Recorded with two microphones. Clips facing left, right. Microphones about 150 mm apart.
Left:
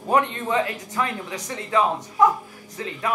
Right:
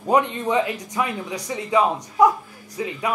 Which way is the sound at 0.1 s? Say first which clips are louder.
Right 2 dB; 15° right (ahead or behind).